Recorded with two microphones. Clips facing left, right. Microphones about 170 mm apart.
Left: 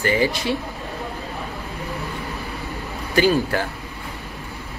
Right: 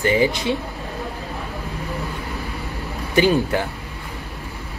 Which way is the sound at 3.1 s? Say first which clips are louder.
Right 1 dB; 20° right (ahead or behind).